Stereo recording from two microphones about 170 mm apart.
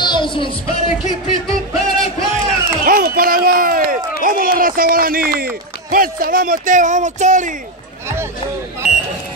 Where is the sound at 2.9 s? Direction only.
55° right (ahead or behind).